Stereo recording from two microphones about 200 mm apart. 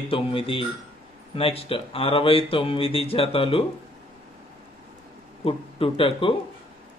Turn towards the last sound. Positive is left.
turn(degrees=25)  # may be behind; listen again after turning